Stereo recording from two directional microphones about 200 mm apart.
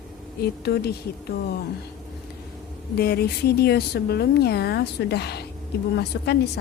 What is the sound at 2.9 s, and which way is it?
A woman's voice, 50° left (ahead or behind).